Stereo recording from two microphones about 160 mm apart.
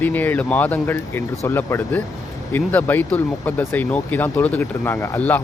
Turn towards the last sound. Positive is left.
turn(degrees=10)  # may be behind; listen again after turning